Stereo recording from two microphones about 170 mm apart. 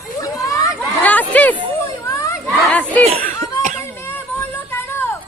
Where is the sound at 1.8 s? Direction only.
15° left (ahead or behind).